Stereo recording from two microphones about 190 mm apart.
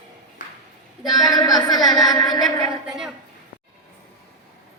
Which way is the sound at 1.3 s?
20° left (ahead or behind).